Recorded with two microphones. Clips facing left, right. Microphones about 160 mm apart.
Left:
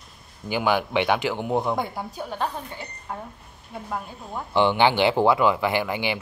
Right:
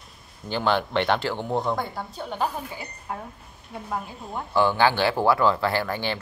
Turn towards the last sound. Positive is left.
turn(degrees=15)  # may be behind; listen again after turning